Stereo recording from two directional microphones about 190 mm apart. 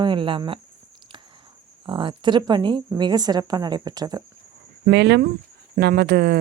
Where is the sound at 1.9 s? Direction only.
25° right (ahead or behind).